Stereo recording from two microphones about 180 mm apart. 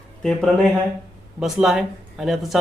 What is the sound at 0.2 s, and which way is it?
Speech, centre (ahead or behind).